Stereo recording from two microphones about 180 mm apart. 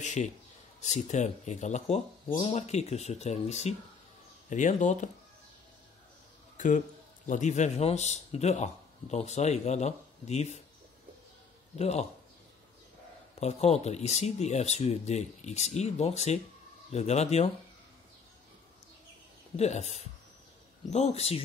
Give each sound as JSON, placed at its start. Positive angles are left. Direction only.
{"t": 0.0, "sound": "a sound", "side_deg": 40}
{"t": 0.7, "sound": "speech", "side_deg": 40}
{"t": 6.5, "sound": "a man's voice", "side_deg": 45}
{"t": 11.7, "sound": "speech", "side_deg": 35}
{"t": 13.4, "sound": "speech", "side_deg": 35}
{"t": 19.5, "sound": "speech", "side_deg": 35}